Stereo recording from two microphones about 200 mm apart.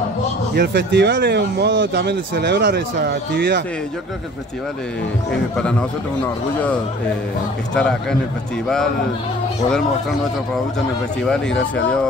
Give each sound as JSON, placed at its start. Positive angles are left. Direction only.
{"t": 0.6, "sound": "speech", "side_deg": -55}
{"t": 5.6, "sound": "a man's voice", "side_deg": 5}
{"t": 7.7, "sound": "a man's voice", "side_deg": 5}
{"t": 11.2, "sound": "a man's voice", "side_deg": 5}